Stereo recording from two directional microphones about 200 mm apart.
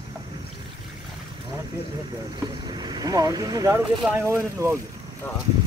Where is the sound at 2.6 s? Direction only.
20° right (ahead or behind).